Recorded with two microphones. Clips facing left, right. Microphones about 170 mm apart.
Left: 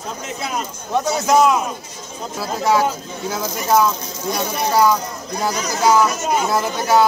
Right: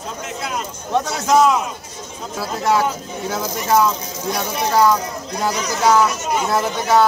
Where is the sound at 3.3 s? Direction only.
Centre (ahead or behind).